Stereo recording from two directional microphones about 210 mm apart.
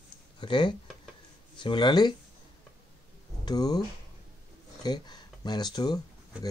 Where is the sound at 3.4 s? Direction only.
20° left (ahead or behind).